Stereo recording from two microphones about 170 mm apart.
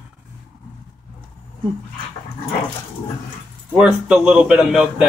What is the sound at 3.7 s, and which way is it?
A man's voice, 5° right (ahead or behind).